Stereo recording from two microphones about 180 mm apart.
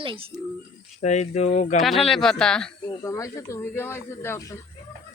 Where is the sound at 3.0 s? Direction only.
15° left (ahead or behind).